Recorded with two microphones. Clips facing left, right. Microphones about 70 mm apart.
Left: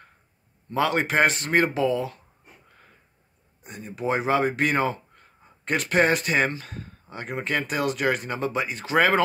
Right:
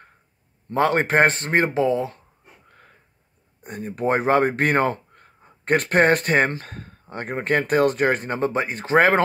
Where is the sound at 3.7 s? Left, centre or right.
Right.